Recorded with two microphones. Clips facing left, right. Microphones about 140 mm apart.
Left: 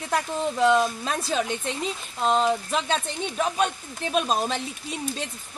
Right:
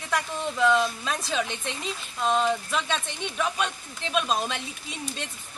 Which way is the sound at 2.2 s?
35° left (ahead or behind).